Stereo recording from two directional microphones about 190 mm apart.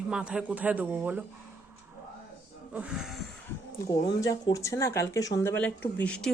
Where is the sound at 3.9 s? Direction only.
20° left (ahead or behind).